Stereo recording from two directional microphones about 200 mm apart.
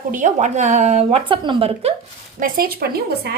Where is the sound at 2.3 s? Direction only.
45° right (ahead or behind).